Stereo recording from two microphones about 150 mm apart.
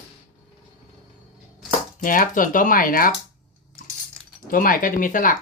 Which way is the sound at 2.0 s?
65° left (ahead or behind).